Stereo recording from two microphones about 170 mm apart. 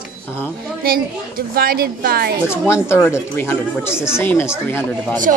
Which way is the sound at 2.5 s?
15° left (ahead or behind).